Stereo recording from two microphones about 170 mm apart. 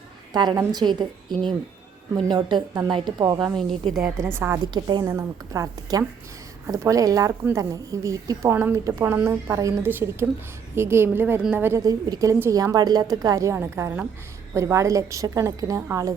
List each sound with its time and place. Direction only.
0.3 s a woman's voice: 25° right (ahead or behind)
3.4 s a woman's voice: 5° left (ahead or behind)
4.2 s a woman's voice: 15° right (ahead or behind)